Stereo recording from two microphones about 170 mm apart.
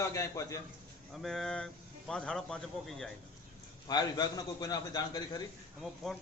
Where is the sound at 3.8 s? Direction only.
25° left (ahead or behind).